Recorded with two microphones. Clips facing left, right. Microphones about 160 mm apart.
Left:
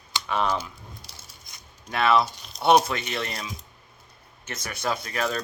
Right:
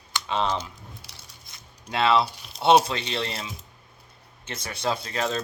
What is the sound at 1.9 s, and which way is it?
Speech, 25° right (ahead or behind).